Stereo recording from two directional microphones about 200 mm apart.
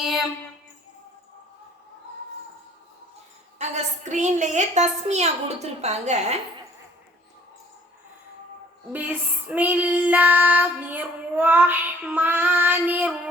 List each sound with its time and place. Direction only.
3.6 s a woman's voice: 35° right (ahead or behind)
8.9 s child singing: 10° right (ahead or behind)